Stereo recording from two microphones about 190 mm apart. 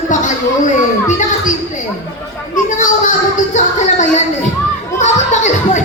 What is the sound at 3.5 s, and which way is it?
Music, 40° left (ahead or behind).